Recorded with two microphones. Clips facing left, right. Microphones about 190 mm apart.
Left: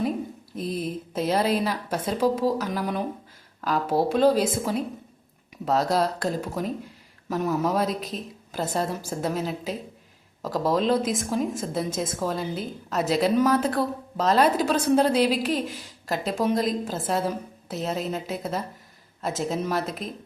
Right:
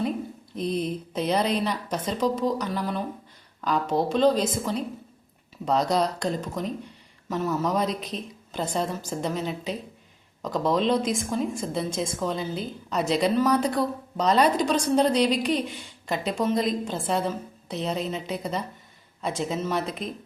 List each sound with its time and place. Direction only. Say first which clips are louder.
0.5 s a woman's voice: right 2 dB; 5° left (ahead or behind)
2.6 s a woman's voice: left 1 dB; 15° left (ahead or behind)